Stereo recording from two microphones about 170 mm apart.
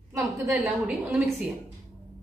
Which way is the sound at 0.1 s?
15° right (ahead or behind).